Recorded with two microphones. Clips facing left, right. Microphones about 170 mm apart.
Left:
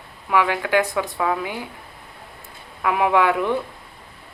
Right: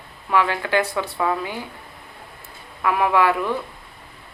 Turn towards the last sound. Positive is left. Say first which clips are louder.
# left 1 dB
turn(degrees=20)  # may be behind; listen again after turning